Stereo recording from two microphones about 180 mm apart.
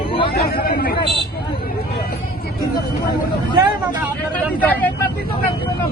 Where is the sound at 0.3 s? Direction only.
60° left (ahead or behind).